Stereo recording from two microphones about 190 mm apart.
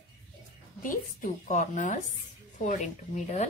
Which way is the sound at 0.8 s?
45° left (ahead or behind).